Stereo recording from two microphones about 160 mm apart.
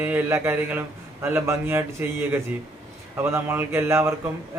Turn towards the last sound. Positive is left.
turn(degrees=-15)  # may be behind; listen again after turning